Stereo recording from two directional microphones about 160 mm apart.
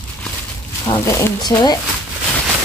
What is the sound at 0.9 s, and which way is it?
Speech, 15° left (ahead or behind).